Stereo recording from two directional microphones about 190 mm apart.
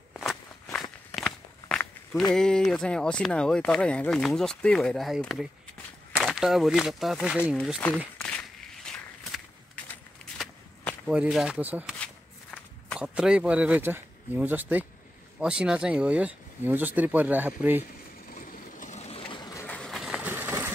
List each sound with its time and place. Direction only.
0.1 s walk: centre (ahead or behind)
2.3 s speech: 5° left (ahead or behind)
8.2 s a sound: 5° left (ahead or behind)
12.0 s walk: centre (ahead or behind)
15.3 s speech: 5° right (ahead or behind)
18.3 s vehicle: 40° left (ahead or behind); by 19.6 s 25° left (ahead or behind)
19.6 s vehicle: 5° left (ahead or behind); by 20.7 s 10° right (ahead or behind)